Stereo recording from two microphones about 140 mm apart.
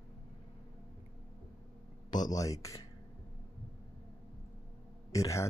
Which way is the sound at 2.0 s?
30° left (ahead or behind).